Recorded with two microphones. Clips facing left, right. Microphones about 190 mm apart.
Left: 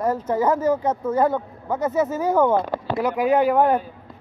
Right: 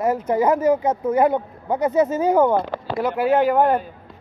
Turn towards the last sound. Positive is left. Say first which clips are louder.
# right 1 dB
turn(degrees=0)  # may be behind; listen again after turning